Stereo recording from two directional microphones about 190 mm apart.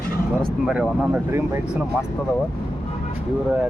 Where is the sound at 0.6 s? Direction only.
5° right (ahead or behind).